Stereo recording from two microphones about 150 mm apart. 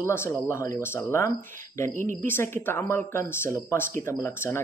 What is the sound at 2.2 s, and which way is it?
Speech, 15° left (ahead or behind).